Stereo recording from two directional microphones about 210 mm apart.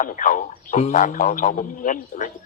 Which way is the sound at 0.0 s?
40° left (ahead or behind).